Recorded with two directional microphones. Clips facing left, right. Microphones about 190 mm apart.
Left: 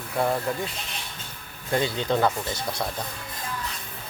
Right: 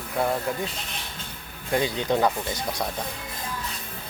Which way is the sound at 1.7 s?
15° right (ahead or behind).